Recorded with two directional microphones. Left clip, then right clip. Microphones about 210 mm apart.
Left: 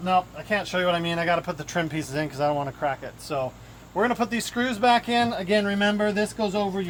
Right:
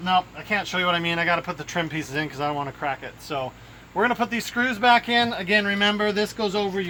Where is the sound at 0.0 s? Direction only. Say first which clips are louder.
Right 1 dB; 30° left (ahead or behind).